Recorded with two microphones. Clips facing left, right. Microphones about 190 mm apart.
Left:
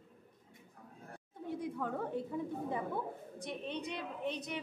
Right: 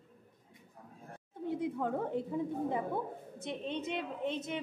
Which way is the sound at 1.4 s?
25° right (ahead or behind).